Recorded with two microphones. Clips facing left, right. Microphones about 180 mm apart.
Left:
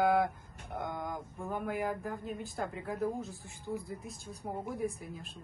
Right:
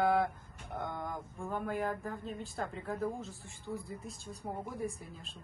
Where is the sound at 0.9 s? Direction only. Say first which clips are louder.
Left 1 dB; centre (ahead or behind).